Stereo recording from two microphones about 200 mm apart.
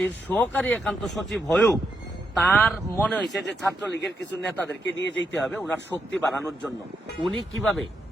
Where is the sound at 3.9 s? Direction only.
60° left (ahead or behind).